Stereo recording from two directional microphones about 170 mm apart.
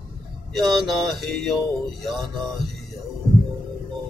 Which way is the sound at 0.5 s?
Centre (ahead or behind).